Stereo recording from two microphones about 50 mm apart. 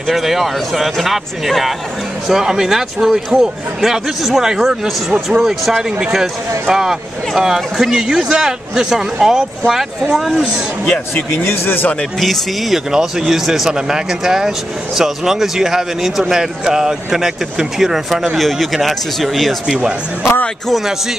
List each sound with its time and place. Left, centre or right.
0.1 s a man's voice: centre
10.9 s a man's voice: left
11.4 s speech: left
12.2 s speech: centre